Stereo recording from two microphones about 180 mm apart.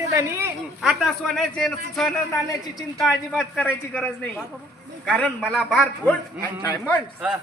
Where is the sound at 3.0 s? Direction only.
Centre (ahead or behind).